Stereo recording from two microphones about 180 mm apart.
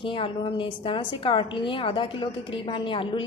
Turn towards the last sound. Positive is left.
turn(degrees=30)  # may be behind; listen again after turning